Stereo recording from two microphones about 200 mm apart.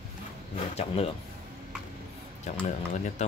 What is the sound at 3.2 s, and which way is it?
Speech, 35° left (ahead or behind).